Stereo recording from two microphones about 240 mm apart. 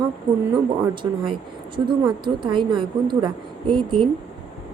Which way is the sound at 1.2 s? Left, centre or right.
Centre.